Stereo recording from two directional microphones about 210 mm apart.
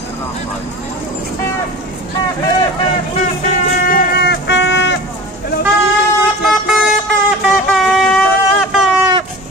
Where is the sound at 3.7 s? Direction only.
45° left (ahead or behind).